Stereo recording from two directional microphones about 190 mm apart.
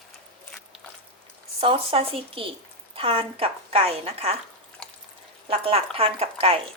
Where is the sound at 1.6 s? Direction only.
30° right (ahead or behind).